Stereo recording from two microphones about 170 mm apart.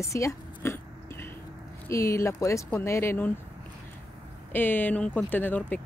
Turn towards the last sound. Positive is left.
turn(degrees=10)  # may be behind; listen again after turning